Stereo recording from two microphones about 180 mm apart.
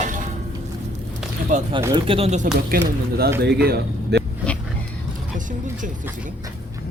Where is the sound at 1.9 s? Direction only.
30° right (ahead or behind).